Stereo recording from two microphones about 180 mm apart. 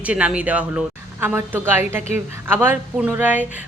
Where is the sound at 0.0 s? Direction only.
5° right (ahead or behind).